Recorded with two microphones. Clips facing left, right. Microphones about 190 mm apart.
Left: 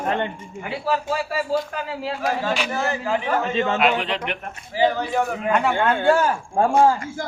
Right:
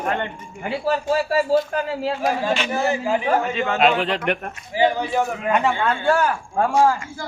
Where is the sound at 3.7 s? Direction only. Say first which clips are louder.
Right 2 dB; 30° right (ahead or behind).